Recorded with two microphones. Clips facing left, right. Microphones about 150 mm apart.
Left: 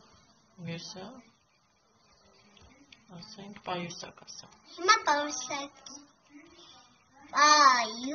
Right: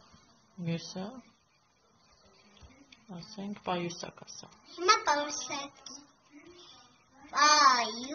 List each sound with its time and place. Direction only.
0.7 s speech: 20° right (ahead or behind)
3.3 s a woman's voice: 25° right (ahead or behind); by 5.9 s centre (ahead or behind)
7.3 s a woman's voice: 5° right (ahead or behind)